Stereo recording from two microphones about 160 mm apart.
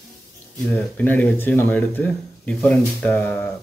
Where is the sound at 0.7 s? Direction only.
10° left (ahead or behind).